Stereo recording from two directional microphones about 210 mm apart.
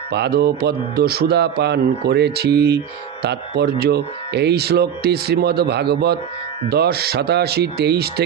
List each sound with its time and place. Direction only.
0.1 s speech: 50° right (ahead or behind)